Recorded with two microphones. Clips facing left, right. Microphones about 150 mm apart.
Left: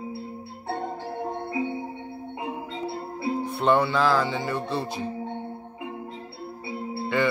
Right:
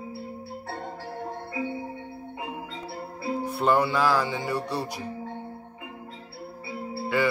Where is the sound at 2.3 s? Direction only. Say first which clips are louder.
Left 3 dB; 25° left (ahead or behind).